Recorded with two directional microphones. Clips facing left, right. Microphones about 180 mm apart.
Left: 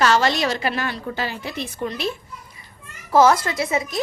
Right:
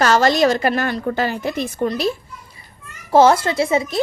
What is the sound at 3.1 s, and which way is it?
Speech, 30° right (ahead or behind).